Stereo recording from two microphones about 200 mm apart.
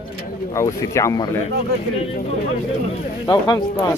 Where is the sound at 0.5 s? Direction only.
15° left (ahead or behind).